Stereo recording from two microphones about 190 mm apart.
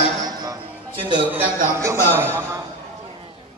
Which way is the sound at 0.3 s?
20° right (ahead or behind).